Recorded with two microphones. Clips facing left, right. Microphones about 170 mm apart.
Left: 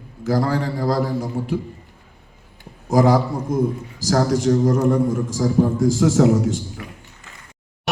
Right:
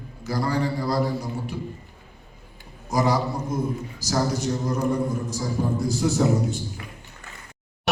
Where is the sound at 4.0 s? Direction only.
90° left.